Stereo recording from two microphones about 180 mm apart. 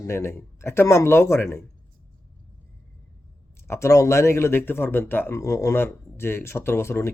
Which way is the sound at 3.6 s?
15° left (ahead or behind).